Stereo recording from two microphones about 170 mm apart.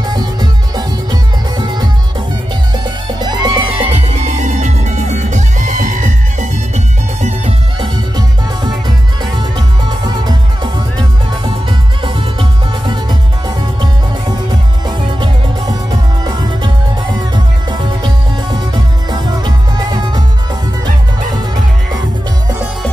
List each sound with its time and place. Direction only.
0.0 s music: 25° right (ahead or behind)
3.2 s music: 25° right (ahead or behind)
4.2 s music: 45° right (ahead or behind)
7.2 s music: 40° right (ahead or behind)
8.6 s music: 25° right (ahead or behind)
14.9 s music: 25° right (ahead or behind)